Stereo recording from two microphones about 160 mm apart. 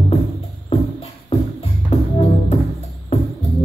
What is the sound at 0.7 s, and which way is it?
Music, 40° left (ahead or behind).